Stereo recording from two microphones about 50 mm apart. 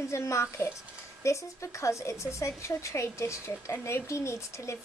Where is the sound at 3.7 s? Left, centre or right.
Left.